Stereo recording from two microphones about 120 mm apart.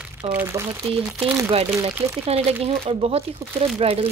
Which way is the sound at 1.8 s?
60° right (ahead or behind).